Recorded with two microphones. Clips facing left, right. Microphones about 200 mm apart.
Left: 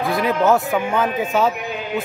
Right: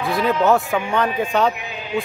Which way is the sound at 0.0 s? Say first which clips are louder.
Even; centre (ahead or behind).